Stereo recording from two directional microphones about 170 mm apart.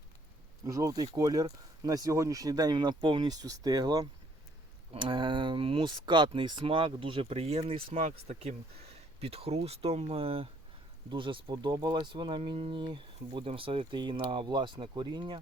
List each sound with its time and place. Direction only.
0.6 s speech: 20° right (ahead or behind)